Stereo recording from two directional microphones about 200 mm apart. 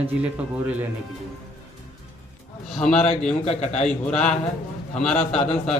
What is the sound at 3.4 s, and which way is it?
Speech, 35° left (ahead or behind).